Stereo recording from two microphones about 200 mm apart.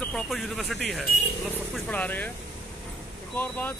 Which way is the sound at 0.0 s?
Centre (ahead or behind).